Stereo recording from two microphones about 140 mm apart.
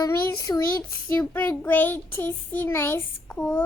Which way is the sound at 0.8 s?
10° left (ahead or behind).